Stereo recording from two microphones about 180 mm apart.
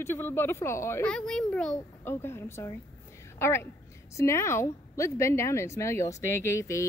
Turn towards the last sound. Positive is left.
turn(degrees=15)  # may be behind; listen again after turning